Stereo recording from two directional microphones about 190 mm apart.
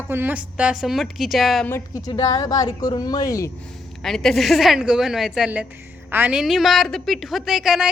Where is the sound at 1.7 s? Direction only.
20° left (ahead or behind).